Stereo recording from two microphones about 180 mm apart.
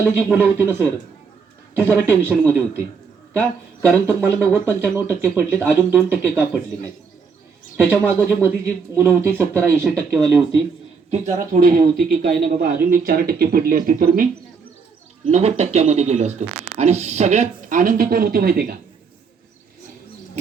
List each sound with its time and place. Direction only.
0.0 s speech: 10° right (ahead or behind)
7.8 s speech: 10° right (ahead or behind)
11.3 s speech: 50° right (ahead or behind)
15.3 s speech: 35° right (ahead or behind); by 18.6 s 55° right (ahead or behind)